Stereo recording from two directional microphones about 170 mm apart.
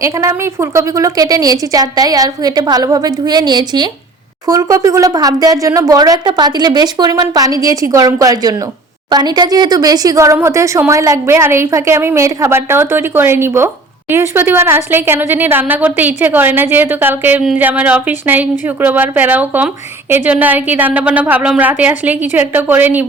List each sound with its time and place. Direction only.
0.0 s speech: 20° right (ahead or behind)